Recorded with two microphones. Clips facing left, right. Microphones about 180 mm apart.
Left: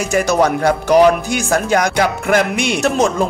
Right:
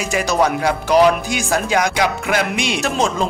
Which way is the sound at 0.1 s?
50° left (ahead or behind).